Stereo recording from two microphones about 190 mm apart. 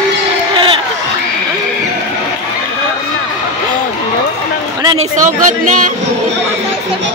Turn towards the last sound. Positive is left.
turn(degrees=-45)  # may be behind; listen again after turning